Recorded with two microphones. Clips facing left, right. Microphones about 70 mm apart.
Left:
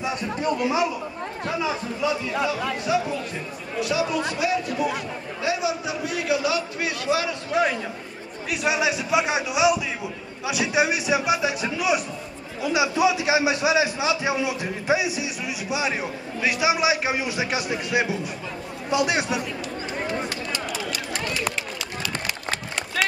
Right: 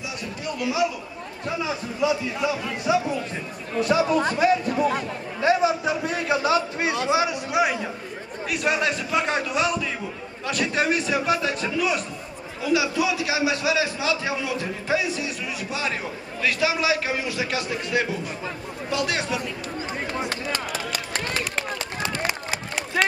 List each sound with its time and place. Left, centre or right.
0.0 s chatter: left
2.9 s a man's voice: right
3.8 s a man's voice: right
7.5 s a man's voice: centre
8.5 s a man's voice: centre
21.1 s run: right
23.0 s run: centre